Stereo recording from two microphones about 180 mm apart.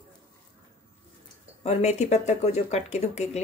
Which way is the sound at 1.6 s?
35° left (ahead or behind).